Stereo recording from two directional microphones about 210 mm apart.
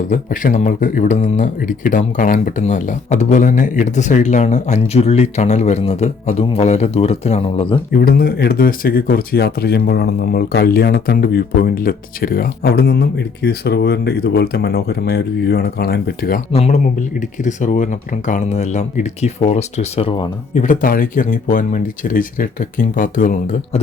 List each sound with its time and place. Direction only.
0.1 s speech: 40° left (ahead or behind)
7.9 s speech: 45° left (ahead or behind)
16.5 s speech: 30° left (ahead or behind)